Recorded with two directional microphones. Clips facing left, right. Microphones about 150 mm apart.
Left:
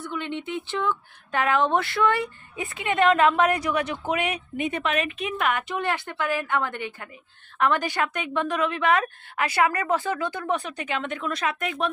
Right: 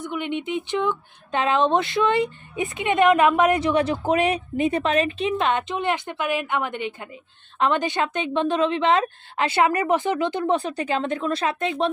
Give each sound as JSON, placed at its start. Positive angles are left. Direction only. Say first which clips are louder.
{"t": 0.0, "sound": "speech", "louder": "right 4 dB", "side_deg": -15}